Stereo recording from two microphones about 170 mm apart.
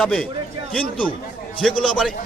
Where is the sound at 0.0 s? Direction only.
5° left (ahead or behind).